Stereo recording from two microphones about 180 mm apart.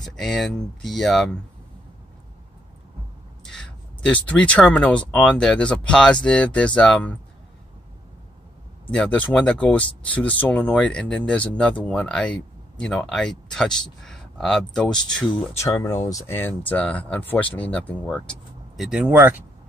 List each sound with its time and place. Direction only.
0.0 s speech: centre (ahead or behind)
3.4 s speech: 5° left (ahead or behind)
8.9 s speech: 5° left (ahead or behind)
15.6 s speech: 15° left (ahead or behind)
18.8 s speech: 5° right (ahead or behind)